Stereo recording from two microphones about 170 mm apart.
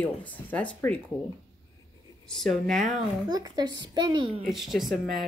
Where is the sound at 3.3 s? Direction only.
25° right (ahead or behind).